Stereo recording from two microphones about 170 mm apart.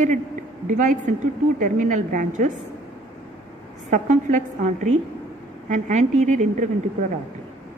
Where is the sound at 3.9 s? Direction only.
45° right (ahead or behind).